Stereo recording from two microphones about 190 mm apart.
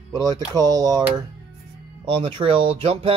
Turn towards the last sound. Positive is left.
turn(degrees=-30)  # may be behind; listen again after turning